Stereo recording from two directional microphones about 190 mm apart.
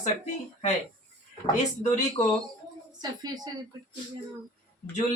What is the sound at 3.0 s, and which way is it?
Speech, 20° right (ahead or behind).